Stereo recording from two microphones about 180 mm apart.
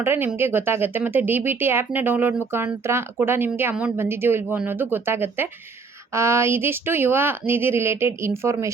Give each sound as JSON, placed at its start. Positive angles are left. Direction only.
{"t": 0.0, "sound": "speech", "side_deg": -10}